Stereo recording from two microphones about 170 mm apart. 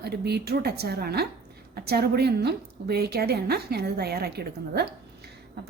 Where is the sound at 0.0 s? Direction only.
75° right (ahead or behind).